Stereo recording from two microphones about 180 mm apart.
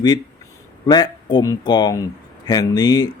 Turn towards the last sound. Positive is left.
turn(degrees=20)  # may be behind; listen again after turning